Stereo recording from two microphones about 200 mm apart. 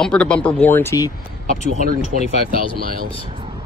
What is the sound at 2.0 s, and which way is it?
Speech, 35° left (ahead or behind).